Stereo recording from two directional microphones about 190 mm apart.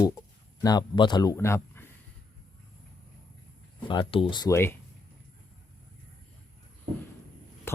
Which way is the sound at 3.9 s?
25° left (ahead or behind).